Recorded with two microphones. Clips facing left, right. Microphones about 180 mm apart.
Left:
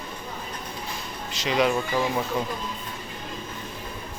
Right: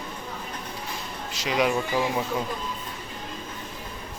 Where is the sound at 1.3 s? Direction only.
10° right (ahead or behind).